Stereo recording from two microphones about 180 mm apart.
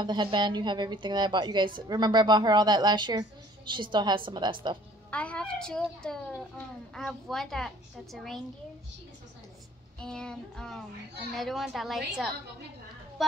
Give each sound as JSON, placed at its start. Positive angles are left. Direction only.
{"t": 0.0, "sound": "speech", "side_deg": -25}
{"t": 5.1, "sound": "a woman's voice", "side_deg": 5}
{"t": 9.9, "sound": "a woman's voice", "side_deg": 5}